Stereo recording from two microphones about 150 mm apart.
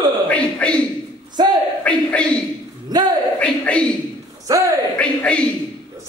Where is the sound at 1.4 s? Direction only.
25° right (ahead or behind).